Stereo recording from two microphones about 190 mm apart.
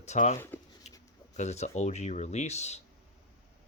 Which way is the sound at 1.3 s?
35° left (ahead or behind).